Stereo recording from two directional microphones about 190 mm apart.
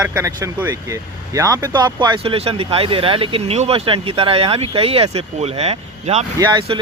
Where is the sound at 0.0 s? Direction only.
10° right (ahead or behind); by 6.2 s 35° right (ahead or behind).